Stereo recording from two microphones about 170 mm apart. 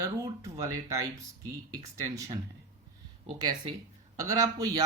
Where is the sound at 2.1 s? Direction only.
20° right (ahead or behind).